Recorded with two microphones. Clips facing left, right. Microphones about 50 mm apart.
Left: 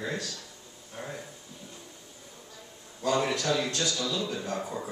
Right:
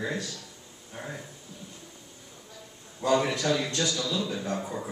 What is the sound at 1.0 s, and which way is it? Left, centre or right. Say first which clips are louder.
Speech: even; centre.